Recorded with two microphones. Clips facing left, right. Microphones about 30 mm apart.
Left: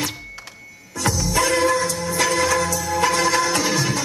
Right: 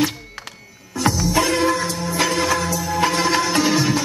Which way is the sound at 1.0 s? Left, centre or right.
Centre.